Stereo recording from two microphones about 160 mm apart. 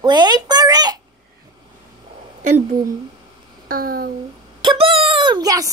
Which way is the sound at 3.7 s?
65° right (ahead or behind).